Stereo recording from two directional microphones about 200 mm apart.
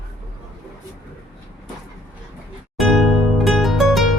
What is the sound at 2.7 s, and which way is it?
Music, centre (ahead or behind).